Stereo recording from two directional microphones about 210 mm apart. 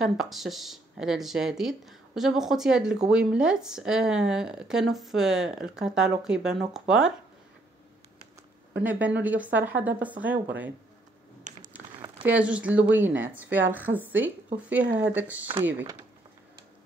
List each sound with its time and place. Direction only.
0.0 s speech: centre (ahead or behind)
9.2 s a woman's voice: 5° right (ahead or behind)
11.5 s a sound: 35° right (ahead or behind)
12.3 s a woman's voice: 5° right (ahead or behind)